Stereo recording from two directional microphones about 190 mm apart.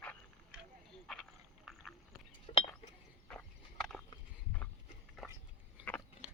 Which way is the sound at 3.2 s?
5° left (ahead or behind).